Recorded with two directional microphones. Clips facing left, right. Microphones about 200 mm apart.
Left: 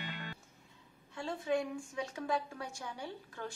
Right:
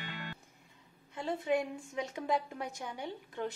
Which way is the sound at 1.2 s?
20° right (ahead or behind).